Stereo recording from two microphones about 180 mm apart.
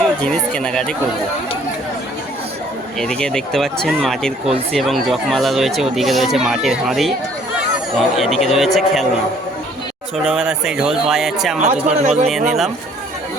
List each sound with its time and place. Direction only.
0.0 s speech: 5° left (ahead or behind)
3.0 s speech: 5° left (ahead or behind)
8.1 s speech: centre (ahead or behind)
10.2 s speech: 5° right (ahead or behind)
11.6 s speech: 35° right (ahead or behind)
12.3 s speech: centre (ahead or behind)